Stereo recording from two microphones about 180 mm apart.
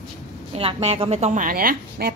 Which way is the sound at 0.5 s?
35° right (ahead or behind).